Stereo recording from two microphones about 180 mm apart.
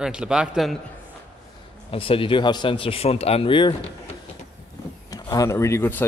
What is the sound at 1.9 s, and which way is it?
Speech, 30° left (ahead or behind).